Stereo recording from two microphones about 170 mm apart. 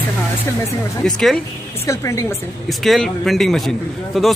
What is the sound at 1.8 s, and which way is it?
Speech, 15° left (ahead or behind).